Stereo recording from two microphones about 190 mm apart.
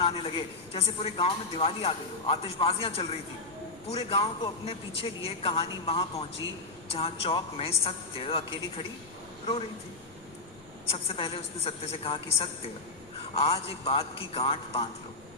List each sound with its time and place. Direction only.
0.0 s a man's voice: 30° left (ahead or behind)
11.1 s a man's voice: 30° left (ahead or behind)